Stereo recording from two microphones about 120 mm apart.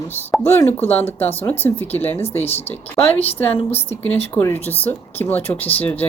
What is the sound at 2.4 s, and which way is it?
Speech, 60° left (ahead or behind).